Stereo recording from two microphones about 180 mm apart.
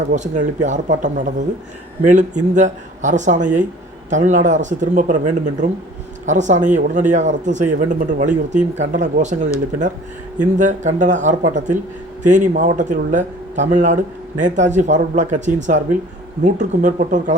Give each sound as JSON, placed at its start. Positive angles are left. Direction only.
{"t": 0.1, "sound": "speech", "side_deg": -45}